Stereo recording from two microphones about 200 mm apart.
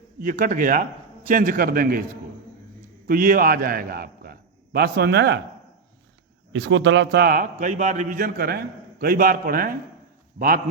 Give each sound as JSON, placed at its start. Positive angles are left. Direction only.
{"t": 0.2, "sound": "a man's voice", "side_deg": -45}
{"t": 3.1, "sound": "a man's voice", "side_deg": -45}
{"t": 6.5, "sound": "a man's voice", "side_deg": -70}